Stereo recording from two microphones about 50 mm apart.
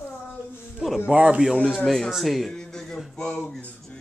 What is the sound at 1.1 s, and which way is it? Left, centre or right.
Speech, right.